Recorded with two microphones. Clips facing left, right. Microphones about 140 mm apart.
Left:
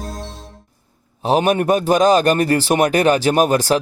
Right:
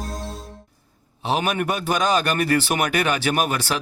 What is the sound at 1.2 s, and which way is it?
A man's voice, 40° left (ahead or behind).